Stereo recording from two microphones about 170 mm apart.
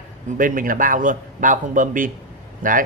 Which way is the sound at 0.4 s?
55° right (ahead or behind).